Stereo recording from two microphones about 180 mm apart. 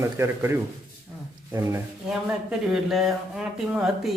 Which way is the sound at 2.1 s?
5° right (ahead or behind).